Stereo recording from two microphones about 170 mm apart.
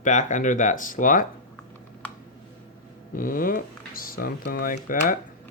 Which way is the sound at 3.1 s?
55° left (ahead or behind).